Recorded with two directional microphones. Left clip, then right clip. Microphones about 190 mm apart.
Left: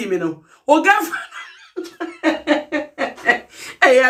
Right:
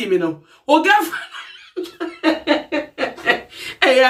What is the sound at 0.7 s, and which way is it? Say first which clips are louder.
Speech: even; 20° right (ahead or behind).